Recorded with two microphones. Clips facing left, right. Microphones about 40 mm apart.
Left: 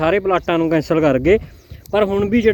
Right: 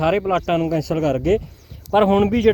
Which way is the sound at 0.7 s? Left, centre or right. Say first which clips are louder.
Left 5 dB; left.